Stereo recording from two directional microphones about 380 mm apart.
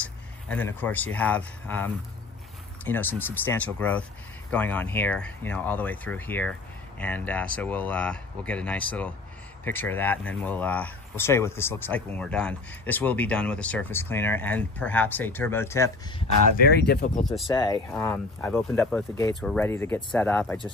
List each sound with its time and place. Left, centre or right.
0.0 s speech: centre
16.5 s speech: left
17.2 s speech: centre